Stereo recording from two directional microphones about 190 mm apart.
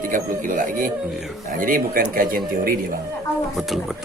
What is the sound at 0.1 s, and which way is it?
Speech, 45° right (ahead or behind).